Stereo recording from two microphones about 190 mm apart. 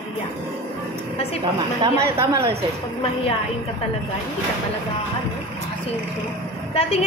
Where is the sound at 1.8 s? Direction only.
15° right (ahead or behind).